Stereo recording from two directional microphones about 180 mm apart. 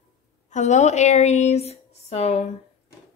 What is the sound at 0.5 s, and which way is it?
Speech, 40° left (ahead or behind).